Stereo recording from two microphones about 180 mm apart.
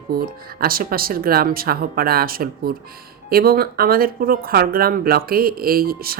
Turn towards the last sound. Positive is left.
turn(degrees=-55)  # may be behind; listen again after turning